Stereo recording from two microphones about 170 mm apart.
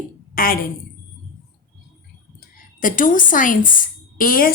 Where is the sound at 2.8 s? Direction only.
50° left (ahead or behind).